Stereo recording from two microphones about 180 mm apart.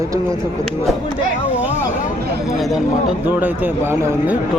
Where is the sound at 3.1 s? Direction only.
10° right (ahead or behind).